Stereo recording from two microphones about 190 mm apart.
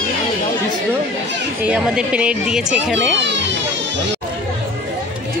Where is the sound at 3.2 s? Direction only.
70° right (ahead or behind).